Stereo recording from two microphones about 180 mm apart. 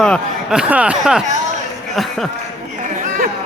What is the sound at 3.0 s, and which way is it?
Chatter, 45° right (ahead or behind).